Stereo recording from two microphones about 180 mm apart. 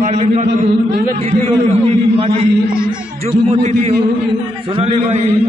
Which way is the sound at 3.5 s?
35° right (ahead or behind).